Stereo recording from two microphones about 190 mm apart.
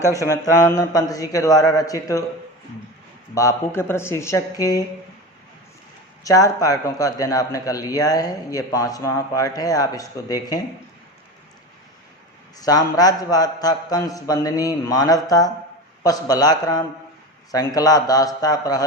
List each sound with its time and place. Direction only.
0.0 s a man's voice: 15° left (ahead or behind)
3.3 s a man's voice: 15° left (ahead or behind)
6.2 s a man's voice: 15° left (ahead or behind)
12.5 s a man's voice: 20° left (ahead or behind)